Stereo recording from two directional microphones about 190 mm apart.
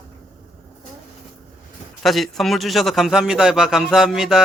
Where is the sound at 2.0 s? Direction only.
Centre (ahead or behind).